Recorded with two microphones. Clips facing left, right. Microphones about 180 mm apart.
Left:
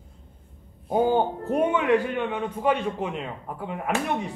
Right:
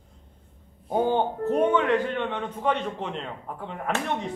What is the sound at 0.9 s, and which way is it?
A man's voice, 10° left (ahead or behind).